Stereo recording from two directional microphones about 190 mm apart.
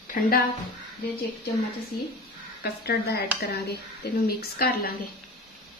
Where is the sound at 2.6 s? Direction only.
60° left (ahead or behind).